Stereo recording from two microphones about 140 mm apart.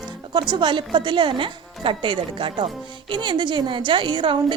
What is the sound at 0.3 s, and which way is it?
Speech, 35° right (ahead or behind).